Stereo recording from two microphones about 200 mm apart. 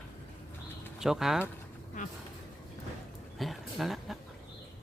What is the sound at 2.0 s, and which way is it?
Speech, 40° left (ahead or behind).